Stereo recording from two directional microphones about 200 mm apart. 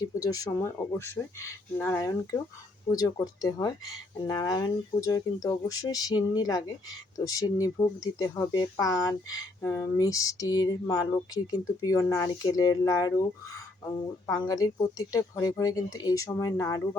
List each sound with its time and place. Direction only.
0.0 s speech: 20° left (ahead or behind)
14.3 s speech: 20° left (ahead or behind)